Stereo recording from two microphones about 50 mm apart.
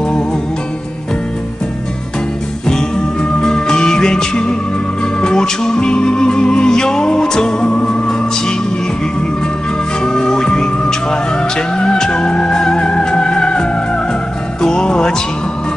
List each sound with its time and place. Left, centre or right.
2.7 s music: centre
10.0 s music: centre